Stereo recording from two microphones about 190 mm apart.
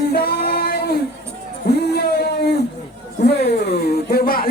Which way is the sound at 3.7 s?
55° left (ahead or behind).